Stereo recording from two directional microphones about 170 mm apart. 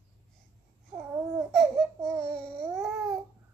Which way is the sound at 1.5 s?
Centre (ahead or behind).